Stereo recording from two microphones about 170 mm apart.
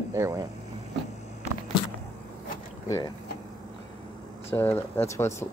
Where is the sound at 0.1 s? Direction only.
15° right (ahead or behind).